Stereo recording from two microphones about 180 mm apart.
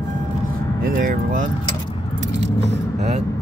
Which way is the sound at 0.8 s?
50° right (ahead or behind).